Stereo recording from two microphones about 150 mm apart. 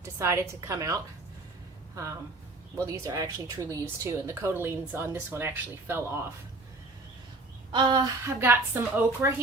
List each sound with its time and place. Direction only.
0.0 s a woman's voice: 15° right (ahead or behind)
2.7 s a woman's voice: 20° right (ahead or behind)
7.7 s a sound: 30° right (ahead or behind)
8.4 s a woman's voice: 15° right (ahead or behind)